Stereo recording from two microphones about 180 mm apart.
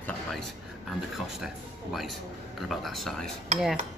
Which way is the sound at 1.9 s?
Centre (ahead or behind).